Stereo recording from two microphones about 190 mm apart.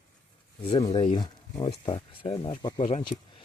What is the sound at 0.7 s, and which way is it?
Speech, 25° left (ahead or behind).